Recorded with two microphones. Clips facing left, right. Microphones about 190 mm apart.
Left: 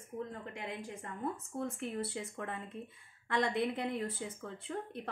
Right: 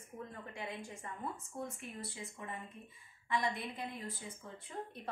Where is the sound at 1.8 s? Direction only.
75° left (ahead or behind).